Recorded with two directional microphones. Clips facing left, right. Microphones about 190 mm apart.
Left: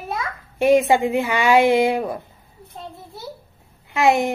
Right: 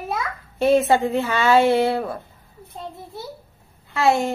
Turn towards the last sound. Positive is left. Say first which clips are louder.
# left 2 dB
turn(degrees=15)  # may be behind; listen again after turning